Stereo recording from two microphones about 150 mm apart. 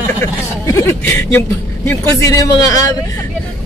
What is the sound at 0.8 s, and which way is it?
A man's voice, 15° left (ahead or behind).